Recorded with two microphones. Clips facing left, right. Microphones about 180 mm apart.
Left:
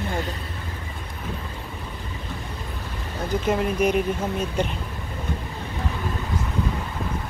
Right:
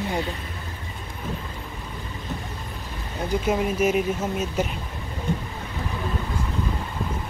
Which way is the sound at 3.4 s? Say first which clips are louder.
Left 1 dB; 5° right (ahead or behind).